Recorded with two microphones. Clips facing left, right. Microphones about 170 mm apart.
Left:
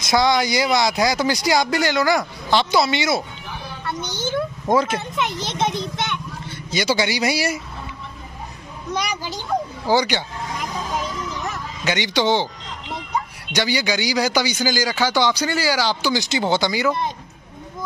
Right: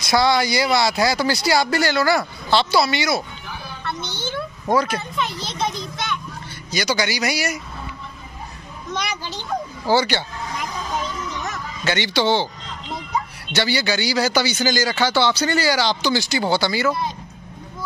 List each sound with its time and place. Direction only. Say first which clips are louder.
0.0 s a man's voice: even; 15° left (ahead or behind)
4.3 s a child's voice: left 2 dB; 20° left (ahead or behind)
8.9 s a man's voice: left 2 dB; 10° left (ahead or behind)
11.8 s a man's voice: even; 15° left (ahead or behind)
13.5 s a man's voice: even; 15° left (ahead or behind)